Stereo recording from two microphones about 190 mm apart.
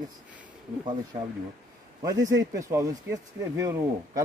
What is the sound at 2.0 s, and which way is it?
A man's voice, 20° right (ahead or behind).